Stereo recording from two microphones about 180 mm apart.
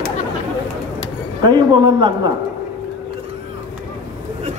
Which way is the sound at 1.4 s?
25° right (ahead or behind).